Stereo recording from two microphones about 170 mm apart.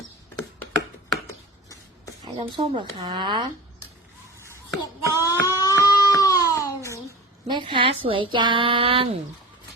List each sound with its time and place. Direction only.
2.4 s speech: 25° right (ahead or behind)
4.8 s child singing: 20° left (ahead or behind)
7.4 s speech: 25° right (ahead or behind)